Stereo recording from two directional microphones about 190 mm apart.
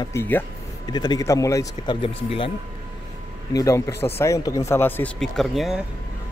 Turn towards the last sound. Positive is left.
turn(degrees=0)  # may be behind; listen again after turning